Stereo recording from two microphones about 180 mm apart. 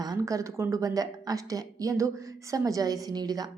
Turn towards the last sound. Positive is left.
turn(degrees=-20)  # may be behind; listen again after turning